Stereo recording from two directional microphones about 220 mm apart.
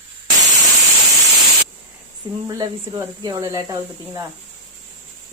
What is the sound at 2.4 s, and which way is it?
Speech, 15° right (ahead or behind).